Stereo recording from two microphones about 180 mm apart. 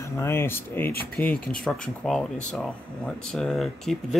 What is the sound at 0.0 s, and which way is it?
Speech, 15° left (ahead or behind).